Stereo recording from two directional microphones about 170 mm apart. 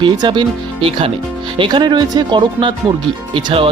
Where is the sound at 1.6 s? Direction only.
25° right (ahead or behind).